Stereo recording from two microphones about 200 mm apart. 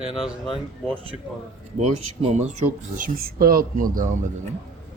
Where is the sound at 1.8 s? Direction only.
35° right (ahead or behind).